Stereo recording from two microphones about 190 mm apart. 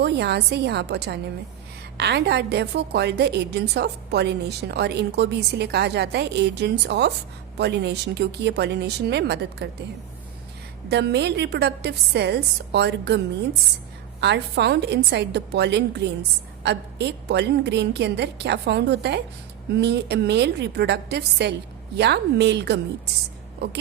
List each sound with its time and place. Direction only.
0.0 s a woman's voice: 60° right (ahead or behind)
10.8 s a woman's voice: 60° right (ahead or behind)